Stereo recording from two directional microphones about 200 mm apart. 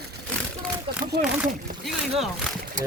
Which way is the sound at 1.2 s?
5° right (ahead or behind).